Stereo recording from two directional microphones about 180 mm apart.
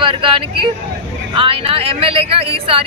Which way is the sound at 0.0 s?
30° right (ahead or behind).